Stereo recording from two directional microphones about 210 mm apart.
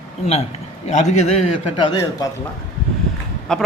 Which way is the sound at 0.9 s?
35° left (ahead or behind).